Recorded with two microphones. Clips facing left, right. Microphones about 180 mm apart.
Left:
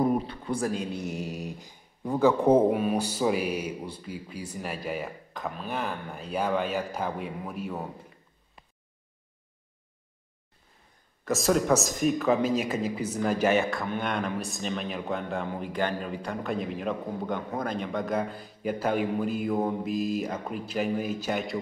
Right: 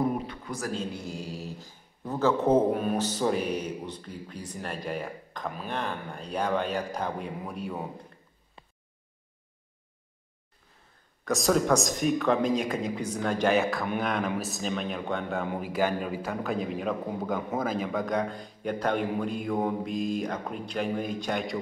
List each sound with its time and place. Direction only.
0.3 s a sound: 30° left (ahead or behind)
0.7 s speech: 15° left (ahead or behind)
11.2 s a man's voice: centre (ahead or behind)